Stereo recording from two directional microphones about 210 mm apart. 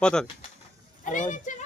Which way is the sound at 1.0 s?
35° left (ahead or behind).